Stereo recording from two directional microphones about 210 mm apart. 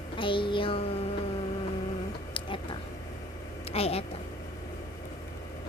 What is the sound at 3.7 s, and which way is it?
Child singing, 30° left (ahead or behind).